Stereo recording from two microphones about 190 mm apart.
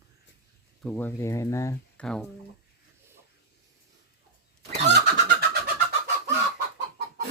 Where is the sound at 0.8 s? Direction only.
5° left (ahead or behind).